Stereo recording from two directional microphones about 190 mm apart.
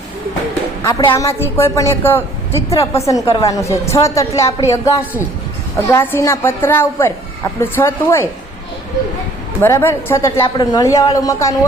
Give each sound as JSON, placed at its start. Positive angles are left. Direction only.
{"t": 0.9, "sound": "a woman's voice", "side_deg": 20}
{"t": 9.6, "sound": "a woman's voice", "side_deg": 15}